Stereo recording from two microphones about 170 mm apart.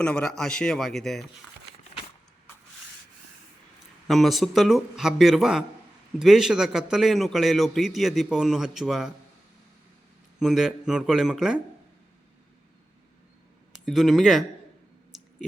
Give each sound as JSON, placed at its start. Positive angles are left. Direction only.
{"t": 0.0, "sound": "a man's voice", "side_deg": 5}
{"t": 4.0, "sound": "a man's voice", "side_deg": 0}
{"t": 10.4, "sound": "a man's voice", "side_deg": 0}
{"t": 13.7, "sound": "speech", "side_deg": 0}
{"t": 15.1, "sound": "a sound", "side_deg": 0}